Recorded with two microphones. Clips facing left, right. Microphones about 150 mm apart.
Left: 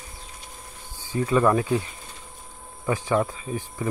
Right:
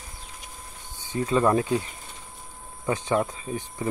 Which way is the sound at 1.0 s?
25° right (ahead or behind).